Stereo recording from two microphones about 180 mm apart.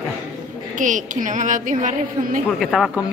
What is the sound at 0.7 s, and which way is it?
A woman's voice, 45° right (ahead or behind).